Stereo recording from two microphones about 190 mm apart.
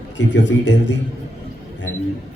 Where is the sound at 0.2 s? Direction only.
70° left (ahead or behind).